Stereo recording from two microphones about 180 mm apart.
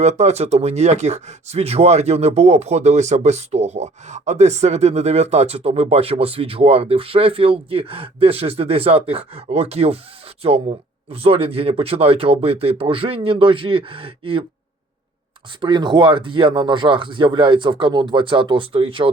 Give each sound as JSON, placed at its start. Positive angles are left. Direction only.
{"t": 0.0, "sound": "speech", "side_deg": -40}
{"t": 15.6, "sound": "speech", "side_deg": -25}